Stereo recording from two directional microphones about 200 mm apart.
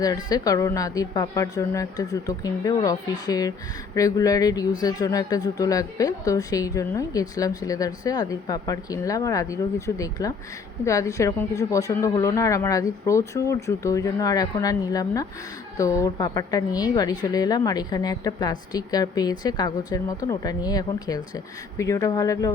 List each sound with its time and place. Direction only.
0.0 s a woman's voice: 20° left (ahead or behind)